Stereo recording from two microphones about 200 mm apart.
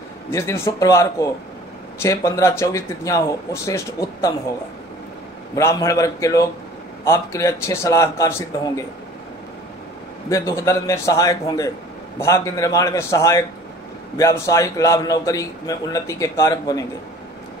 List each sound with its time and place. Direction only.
0.3 s a man's voice: 15° left (ahead or behind)
5.6 s a man's voice: 15° left (ahead or behind)
10.3 s a man's voice: 15° left (ahead or behind)